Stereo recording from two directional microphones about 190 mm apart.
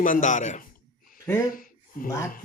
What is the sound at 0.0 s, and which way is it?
Speech, 40° left (ahead or behind).